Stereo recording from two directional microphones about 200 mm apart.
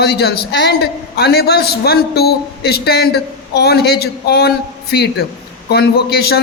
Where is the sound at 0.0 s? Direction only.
55° left (ahead or behind).